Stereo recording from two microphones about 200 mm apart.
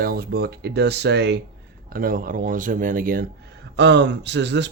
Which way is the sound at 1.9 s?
45° right (ahead or behind).